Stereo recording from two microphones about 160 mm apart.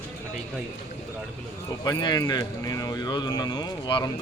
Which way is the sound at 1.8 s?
25° left (ahead or behind).